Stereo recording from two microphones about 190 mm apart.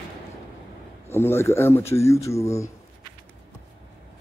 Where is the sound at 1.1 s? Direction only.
15° left (ahead or behind).